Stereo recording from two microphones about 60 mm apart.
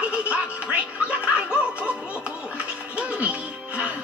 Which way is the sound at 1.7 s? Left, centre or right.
Centre.